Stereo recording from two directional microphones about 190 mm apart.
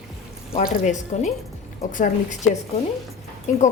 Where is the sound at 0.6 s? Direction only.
45° left (ahead or behind).